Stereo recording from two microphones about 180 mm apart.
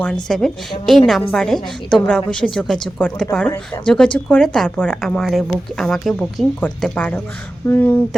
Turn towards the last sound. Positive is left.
turn(degrees=10)  # may be behind; listen again after turning